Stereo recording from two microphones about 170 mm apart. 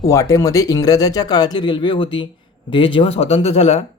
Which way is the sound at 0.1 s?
20° left (ahead or behind).